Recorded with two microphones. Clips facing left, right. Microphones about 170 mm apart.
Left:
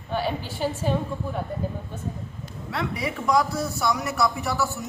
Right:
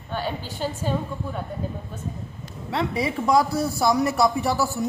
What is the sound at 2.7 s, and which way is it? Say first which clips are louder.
A man's voice: right 4 dB; 30° right (ahead or behind).